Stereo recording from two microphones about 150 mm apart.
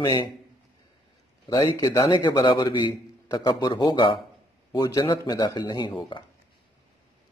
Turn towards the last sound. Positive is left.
turn(degrees=25)  # may be behind; listen again after turning